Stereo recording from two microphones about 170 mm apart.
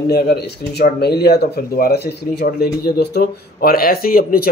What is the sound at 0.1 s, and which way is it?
Speech, 70° left (ahead or behind).